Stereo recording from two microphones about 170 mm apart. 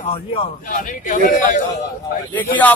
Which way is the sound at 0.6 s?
50° left (ahead or behind).